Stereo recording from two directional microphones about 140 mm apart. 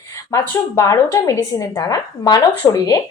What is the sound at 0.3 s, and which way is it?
A woman's voice, 20° left (ahead or behind).